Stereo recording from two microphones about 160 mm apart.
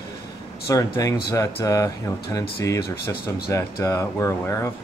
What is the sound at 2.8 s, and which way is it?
Speech, 75° left (ahead or behind).